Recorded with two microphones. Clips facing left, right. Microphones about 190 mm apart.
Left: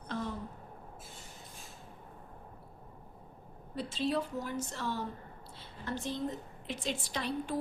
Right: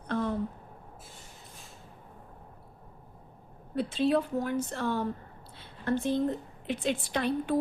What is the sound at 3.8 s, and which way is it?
A woman's voice, 60° right (ahead or behind).